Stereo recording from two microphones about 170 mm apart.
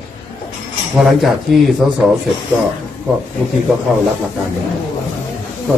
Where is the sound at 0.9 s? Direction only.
Centre (ahead or behind).